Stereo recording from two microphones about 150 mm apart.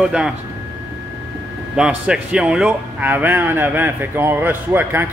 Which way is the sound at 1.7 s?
5° right (ahead or behind).